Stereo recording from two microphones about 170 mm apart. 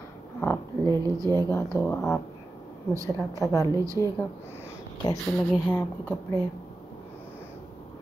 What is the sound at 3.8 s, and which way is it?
Speech, 20° right (ahead or behind).